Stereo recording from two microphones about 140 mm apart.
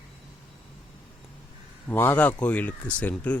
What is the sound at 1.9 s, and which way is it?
Speech, 15° left (ahead or behind).